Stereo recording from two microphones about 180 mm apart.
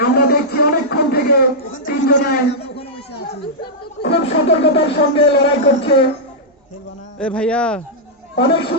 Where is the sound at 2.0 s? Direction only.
80° left.